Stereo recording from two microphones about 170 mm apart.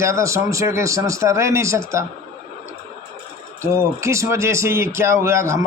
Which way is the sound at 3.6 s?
15° right (ahead or behind).